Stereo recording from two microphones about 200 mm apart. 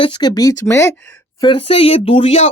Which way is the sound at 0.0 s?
20° left (ahead or behind).